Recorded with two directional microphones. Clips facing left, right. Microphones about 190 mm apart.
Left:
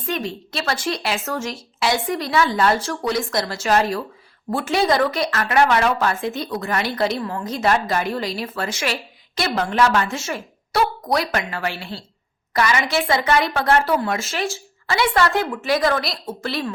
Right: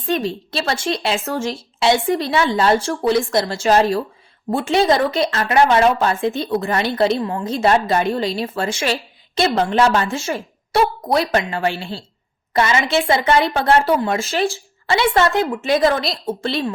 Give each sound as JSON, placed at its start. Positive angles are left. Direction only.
{"t": 0.0, "sound": "speech", "side_deg": -30}